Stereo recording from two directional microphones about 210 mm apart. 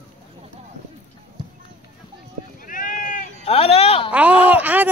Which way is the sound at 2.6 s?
40° left (ahead or behind).